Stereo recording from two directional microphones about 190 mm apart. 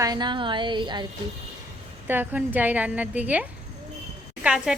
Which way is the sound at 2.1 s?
10° right (ahead or behind).